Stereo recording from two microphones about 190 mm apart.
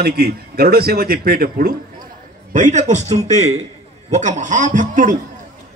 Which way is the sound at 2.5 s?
40° right (ahead or behind).